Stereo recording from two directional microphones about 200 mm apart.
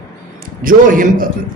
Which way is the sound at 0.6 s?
40° right (ahead or behind).